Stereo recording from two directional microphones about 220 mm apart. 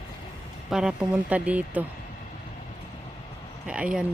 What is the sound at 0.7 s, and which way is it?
A woman's voice, 5° right (ahead or behind).